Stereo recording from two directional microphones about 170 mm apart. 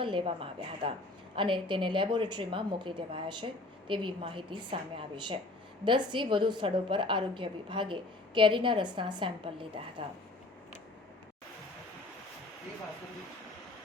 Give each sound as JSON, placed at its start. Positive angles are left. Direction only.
{"t": 0.0, "sound": "a woman's voice", "side_deg": -30}